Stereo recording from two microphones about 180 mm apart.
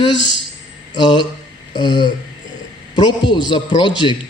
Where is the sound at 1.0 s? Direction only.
25° left (ahead or behind).